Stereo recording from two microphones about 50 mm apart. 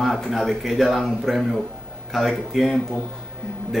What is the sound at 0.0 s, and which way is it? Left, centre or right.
Speech, centre.